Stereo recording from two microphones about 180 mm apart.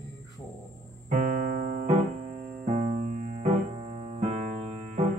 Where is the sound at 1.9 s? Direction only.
35° right (ahead or behind).